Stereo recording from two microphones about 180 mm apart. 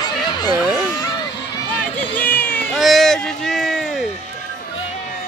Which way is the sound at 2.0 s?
10° left (ahead or behind).